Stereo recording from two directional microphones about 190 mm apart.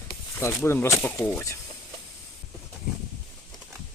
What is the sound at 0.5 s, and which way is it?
Speech, 10° left (ahead or behind).